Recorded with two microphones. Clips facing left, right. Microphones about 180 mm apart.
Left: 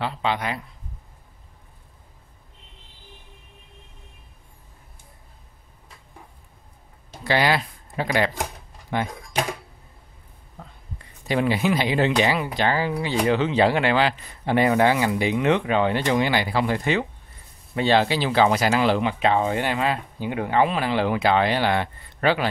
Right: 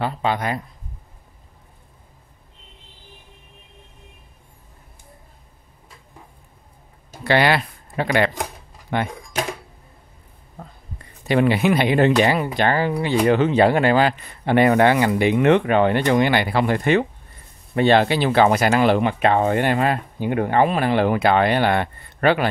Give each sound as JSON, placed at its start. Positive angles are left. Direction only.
{"t": 0.0, "sound": "speech", "side_deg": -45}
{"t": 7.2, "sound": "speech", "side_deg": -65}
{"t": 10.6, "sound": "a sound", "side_deg": -45}
{"t": 11.2, "sound": "speech", "side_deg": -65}